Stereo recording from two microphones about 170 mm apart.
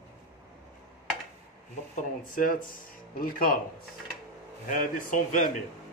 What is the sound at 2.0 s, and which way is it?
Speech, 50° left (ahead or behind).